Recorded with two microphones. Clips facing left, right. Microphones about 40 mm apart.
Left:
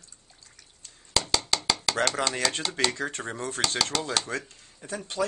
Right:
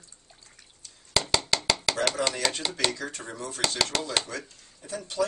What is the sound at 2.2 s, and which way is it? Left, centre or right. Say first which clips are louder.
Speech: even; left.